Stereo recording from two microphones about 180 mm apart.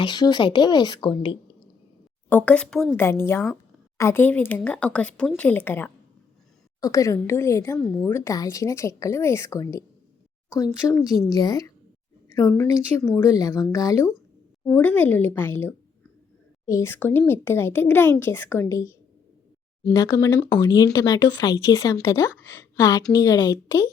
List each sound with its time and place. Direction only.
0.0 s speech: 25° left (ahead or behind)
2.3 s speech: 10° left (ahead or behind)
11.0 s a woman's voice: 20° left (ahead or behind)